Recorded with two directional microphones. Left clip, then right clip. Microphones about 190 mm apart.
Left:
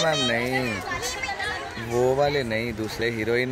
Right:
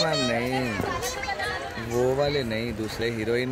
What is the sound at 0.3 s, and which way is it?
Speech, 15° left (ahead or behind).